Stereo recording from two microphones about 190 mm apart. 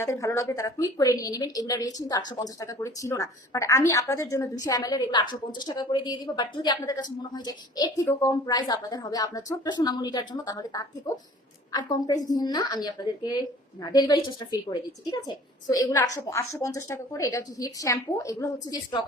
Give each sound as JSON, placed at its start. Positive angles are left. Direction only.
{"t": 0.0, "sound": "a woman's voice", "side_deg": 15}